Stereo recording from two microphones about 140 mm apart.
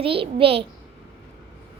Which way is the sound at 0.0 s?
40° right (ahead or behind).